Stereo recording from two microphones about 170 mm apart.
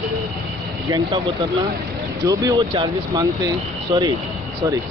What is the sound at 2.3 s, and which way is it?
Speech, 20° right (ahead or behind).